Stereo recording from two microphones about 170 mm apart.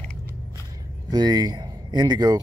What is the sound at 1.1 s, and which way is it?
Speech, 25° right (ahead or behind).